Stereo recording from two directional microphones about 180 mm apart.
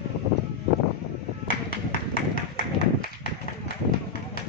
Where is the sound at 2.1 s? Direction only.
55° left (ahead or behind).